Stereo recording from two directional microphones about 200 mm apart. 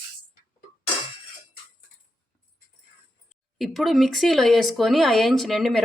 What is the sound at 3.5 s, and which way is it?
Speech, centre (ahead or behind).